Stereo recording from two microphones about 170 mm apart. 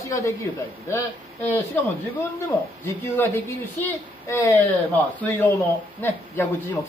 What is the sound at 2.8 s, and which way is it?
Speech, 15° left (ahead or behind).